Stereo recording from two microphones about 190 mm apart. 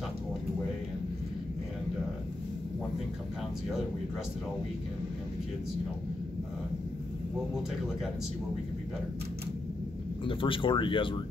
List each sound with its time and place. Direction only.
10.2 s speech: 25° left (ahead or behind)